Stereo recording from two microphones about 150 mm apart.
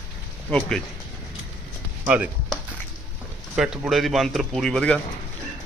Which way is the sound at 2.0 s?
10° right (ahead or behind).